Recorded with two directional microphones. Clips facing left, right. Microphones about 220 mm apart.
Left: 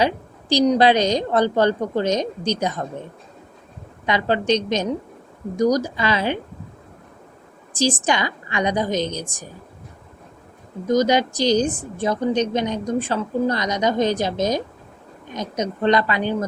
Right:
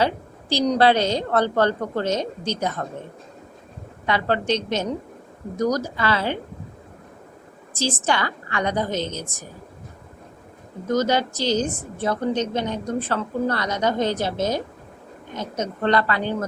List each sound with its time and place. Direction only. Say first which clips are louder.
0.0 s a woman's voice: left 2 dB; 15° left (ahead or behind)
4.0 s a woman's voice: left 2 dB; 15° left (ahead or behind)
7.7 s a woman's voice: left 3 dB; 15° left (ahead or behind)
10.8 s a woman's voice: left 3 dB; 15° left (ahead or behind)